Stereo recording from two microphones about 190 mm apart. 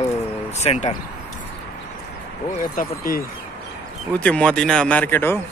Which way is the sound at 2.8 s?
50° left (ahead or behind).